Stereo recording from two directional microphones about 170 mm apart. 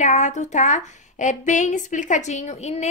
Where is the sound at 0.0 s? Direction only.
45° left (ahead or behind).